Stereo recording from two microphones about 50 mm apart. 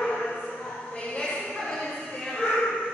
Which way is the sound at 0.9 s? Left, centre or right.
Left.